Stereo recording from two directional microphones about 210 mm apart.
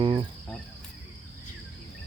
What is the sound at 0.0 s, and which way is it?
Cricket, 20° right (ahead or behind).